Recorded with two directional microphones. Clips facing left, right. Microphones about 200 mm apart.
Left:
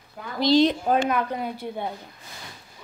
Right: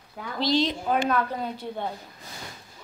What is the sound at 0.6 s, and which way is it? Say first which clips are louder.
Speech: left 7 dB; 50° left (ahead or behind).